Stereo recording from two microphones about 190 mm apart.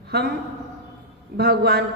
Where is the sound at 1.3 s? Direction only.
55° right (ahead or behind).